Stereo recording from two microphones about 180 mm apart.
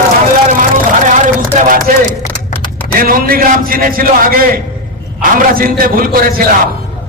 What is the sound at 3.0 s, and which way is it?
A man's voice, 55° right (ahead or behind).